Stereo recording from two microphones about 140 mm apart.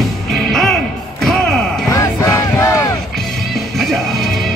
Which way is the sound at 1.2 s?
Centre (ahead or behind).